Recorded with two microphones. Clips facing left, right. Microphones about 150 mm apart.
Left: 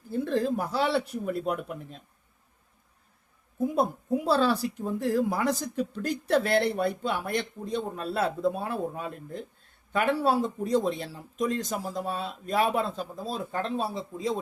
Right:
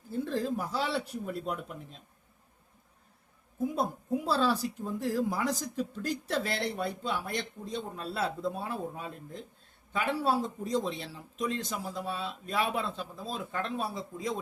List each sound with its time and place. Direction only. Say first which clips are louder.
0.1 s speech: left 5 dB; 65° left (ahead or behind)
3.8 s speech: left 6 dB; 65° left (ahead or behind); by 14.3 s 25° left (ahead or behind)